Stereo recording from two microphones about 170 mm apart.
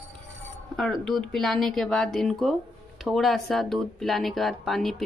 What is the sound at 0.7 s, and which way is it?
Speech, centre (ahead or behind).